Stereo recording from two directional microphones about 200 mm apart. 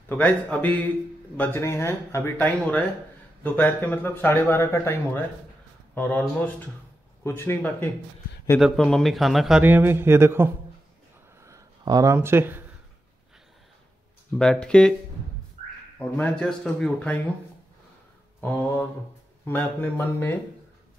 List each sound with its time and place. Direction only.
0.2 s a man's voice: 10° left (ahead or behind); by 12.6 s 10° right (ahead or behind)
14.3 s a man's voice: 5° left (ahead or behind)
15.6 s a sound: 35° right (ahead or behind)
16.0 s a man's voice: 5° left (ahead or behind)
18.4 s a man's voice: 10° left (ahead or behind)